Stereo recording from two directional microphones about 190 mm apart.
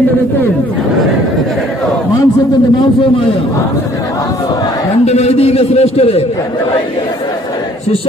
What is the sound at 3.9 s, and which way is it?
Crowd, 20° left (ahead or behind).